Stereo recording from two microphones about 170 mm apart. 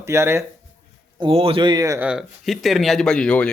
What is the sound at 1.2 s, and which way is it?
Speech, 35° right (ahead or behind).